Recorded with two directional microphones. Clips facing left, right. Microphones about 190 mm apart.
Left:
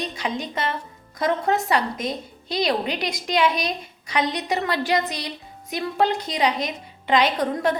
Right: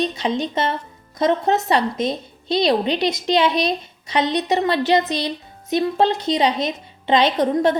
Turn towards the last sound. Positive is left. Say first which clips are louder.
# right 5 dB
turn(degrees=-25)  # may be behind; listen again after turning